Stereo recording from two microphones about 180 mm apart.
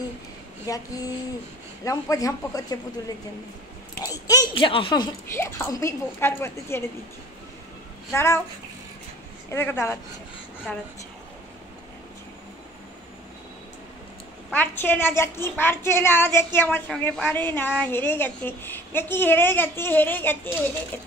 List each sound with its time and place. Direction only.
0.7 s speech: 20° left (ahead or behind)
1.9 s speech: 20° left (ahead or behind)
4.0 s speech: 20° left (ahead or behind)
8.1 s a woman's voice: 15° left (ahead or behind)
9.5 s a woman's voice: 15° left (ahead or behind)
14.5 s a woman's voice: 10° left (ahead or behind)